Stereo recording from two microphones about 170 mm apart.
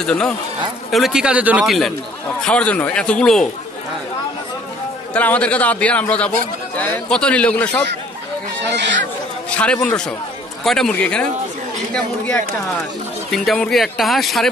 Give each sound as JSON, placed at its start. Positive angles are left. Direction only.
{"t": 0.0, "sound": "speech", "side_deg": 5}
{"t": 5.1, "sound": "a man's voice", "side_deg": 10}
{"t": 8.6, "sound": "speech", "side_deg": -90}
{"t": 9.5, "sound": "a man's voice", "side_deg": 5}
{"t": 13.3, "sound": "speech", "side_deg": 0}